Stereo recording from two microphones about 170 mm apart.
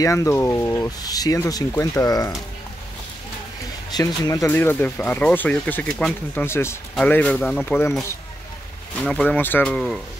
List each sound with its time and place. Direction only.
0.0 s speech: 20° left (ahead or behind)
3.9 s speech: 20° left (ahead or behind)
9.0 s speech: 5° left (ahead or behind)